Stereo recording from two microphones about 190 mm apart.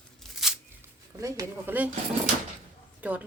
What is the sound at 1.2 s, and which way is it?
Speech, 15° right (ahead or behind).